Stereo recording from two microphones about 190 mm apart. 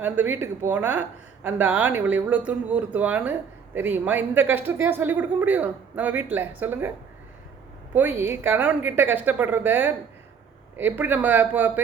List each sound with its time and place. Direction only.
0.0 s speech: 10° right (ahead or behind)
7.9 s speech: 10° right (ahead or behind)